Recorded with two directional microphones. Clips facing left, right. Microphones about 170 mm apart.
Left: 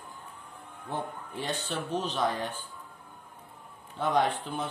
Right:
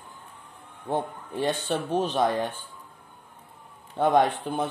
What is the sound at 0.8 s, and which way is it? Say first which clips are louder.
Speech: right 7 dB; 50° right (ahead or behind).